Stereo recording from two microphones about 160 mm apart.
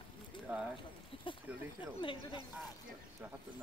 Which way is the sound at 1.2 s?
30° left (ahead or behind).